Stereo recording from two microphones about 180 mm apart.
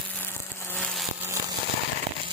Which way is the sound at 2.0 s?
35° right (ahead or behind).